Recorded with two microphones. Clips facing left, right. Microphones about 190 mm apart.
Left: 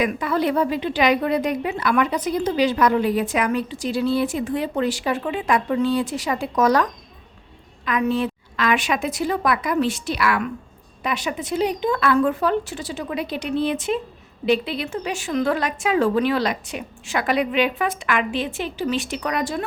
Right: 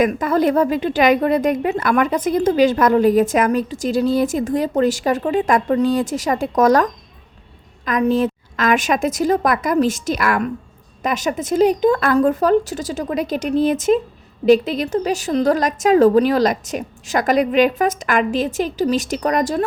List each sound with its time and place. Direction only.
0.0 s a woman's voice: 45° right (ahead or behind)
7.9 s a woman's voice: 40° right (ahead or behind)